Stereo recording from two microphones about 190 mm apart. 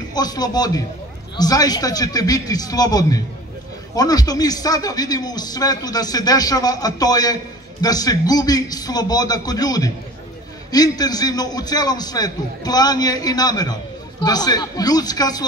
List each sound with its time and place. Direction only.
0.1 s speech: 20° left (ahead or behind)